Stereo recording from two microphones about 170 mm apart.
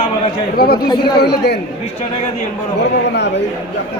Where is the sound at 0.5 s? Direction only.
65° left (ahead or behind).